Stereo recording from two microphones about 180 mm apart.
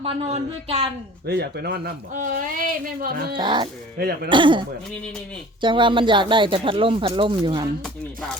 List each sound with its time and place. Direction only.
0.0 s speech: 35° right (ahead or behind)
1.3 s speech: 65° right (ahead or behind)
2.1 s speech: 50° right (ahead or behind)
3.3 s speech: 25° right (ahead or behind)
3.9 s speech: 60° right (ahead or behind)
4.3 s speech: 25° right (ahead or behind)
5.6 s speech: 25° right (ahead or behind)